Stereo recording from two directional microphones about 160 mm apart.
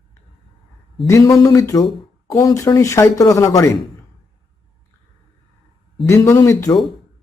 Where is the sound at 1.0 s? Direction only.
20° left (ahead or behind).